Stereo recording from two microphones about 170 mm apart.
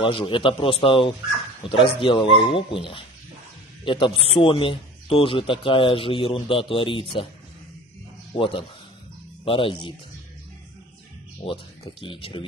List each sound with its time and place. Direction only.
0.0 s speech: 30° left (ahead or behind)
8.4 s speech: 30° left (ahead or behind)
11.4 s speech: 30° left (ahead or behind)